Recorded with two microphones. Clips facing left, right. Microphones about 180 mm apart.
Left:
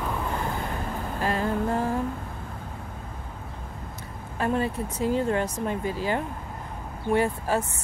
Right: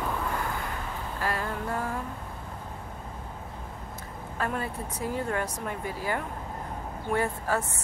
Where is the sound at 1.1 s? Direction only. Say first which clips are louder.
Left 6 dB; 20° left (ahead or behind).